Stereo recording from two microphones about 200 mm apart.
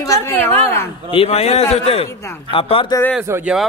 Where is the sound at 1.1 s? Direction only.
30° left (ahead or behind).